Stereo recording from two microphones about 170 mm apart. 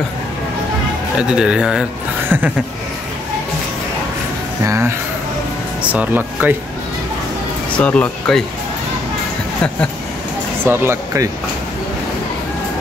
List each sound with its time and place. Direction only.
1.1 s speech: 5° right (ahead or behind)
4.6 s speech: 15° right (ahead or behind)
7.7 s speech: 5° left (ahead or behind)
10.6 s speech: 15° right (ahead or behind)